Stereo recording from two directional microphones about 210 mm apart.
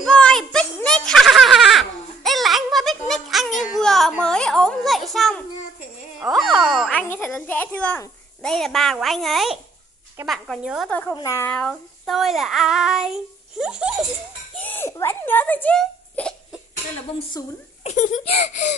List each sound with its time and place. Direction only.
0.0 s a sound: 5° left (ahead or behind)
10.2 s child singing: centre (ahead or behind)
10.9 s a woman's voice: 5° left (ahead or behind)
11.1 s child singing: 15° left (ahead or behind); by 14.0 s 5° right (ahead or behind)
14.6 s a sound: 10° left (ahead or behind)
17.8 s speech: 35° left (ahead or behind)